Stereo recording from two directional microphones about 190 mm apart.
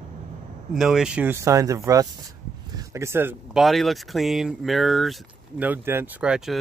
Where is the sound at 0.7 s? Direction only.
Centre (ahead or behind).